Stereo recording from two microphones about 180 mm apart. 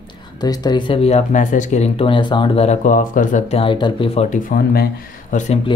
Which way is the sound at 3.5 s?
30° left (ahead or behind).